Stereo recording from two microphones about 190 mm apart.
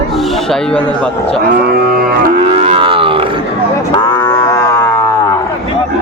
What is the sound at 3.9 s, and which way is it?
Cattle, 20° left (ahead or behind).